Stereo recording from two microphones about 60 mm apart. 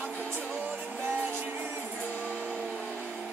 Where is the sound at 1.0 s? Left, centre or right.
Right.